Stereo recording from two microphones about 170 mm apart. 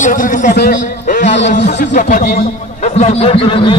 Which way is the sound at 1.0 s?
50° left (ahead or behind).